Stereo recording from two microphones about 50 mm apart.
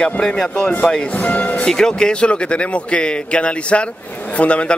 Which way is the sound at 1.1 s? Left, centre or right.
Left.